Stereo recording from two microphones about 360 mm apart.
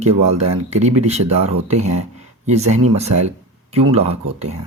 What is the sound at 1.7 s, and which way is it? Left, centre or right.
Speech, right.